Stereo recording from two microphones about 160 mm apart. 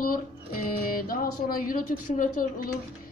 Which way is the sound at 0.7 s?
60° left (ahead or behind).